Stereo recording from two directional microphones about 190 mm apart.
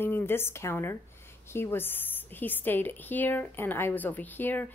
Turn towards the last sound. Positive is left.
turn(degrees=10)  # may be behind; listen again after turning